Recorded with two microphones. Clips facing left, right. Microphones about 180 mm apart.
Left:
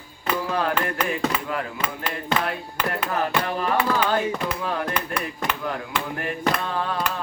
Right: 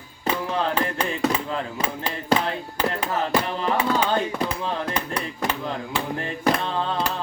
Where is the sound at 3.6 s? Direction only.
25° right (ahead or behind).